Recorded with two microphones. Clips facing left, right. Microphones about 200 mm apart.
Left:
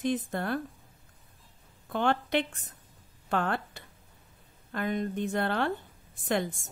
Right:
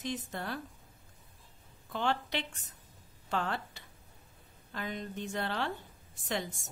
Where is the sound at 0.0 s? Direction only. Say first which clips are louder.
Left 8 dB; 55° left (ahead or behind).